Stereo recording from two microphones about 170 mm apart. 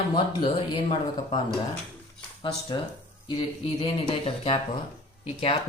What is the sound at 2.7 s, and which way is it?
Speech, 25° left (ahead or behind).